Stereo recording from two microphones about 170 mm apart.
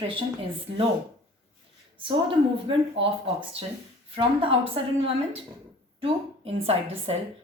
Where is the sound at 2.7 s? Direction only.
30° right (ahead or behind).